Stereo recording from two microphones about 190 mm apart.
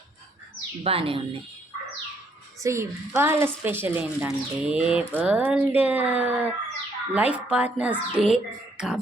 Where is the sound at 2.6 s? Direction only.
15° right (ahead or behind).